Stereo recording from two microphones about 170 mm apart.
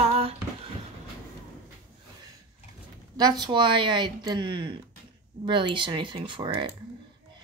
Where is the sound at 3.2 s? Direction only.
25° right (ahead or behind).